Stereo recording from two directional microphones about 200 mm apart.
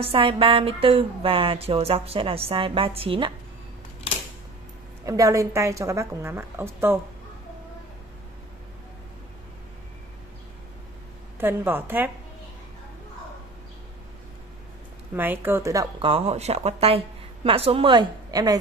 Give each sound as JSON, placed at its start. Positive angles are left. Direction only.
{"t": 0.0, "sound": "speech", "side_deg": -25}
{"t": 5.0, "sound": "a woman's voice", "side_deg": -15}
{"t": 11.3, "sound": "a woman's voice", "side_deg": -10}
{"t": 15.1, "sound": "a woman's voice", "side_deg": -10}
{"t": 16.1, "sound": "speech", "side_deg": -30}